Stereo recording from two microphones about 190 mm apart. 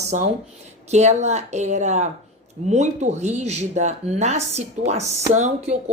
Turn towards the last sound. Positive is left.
turn(degrees=-35)  # may be behind; listen again after turning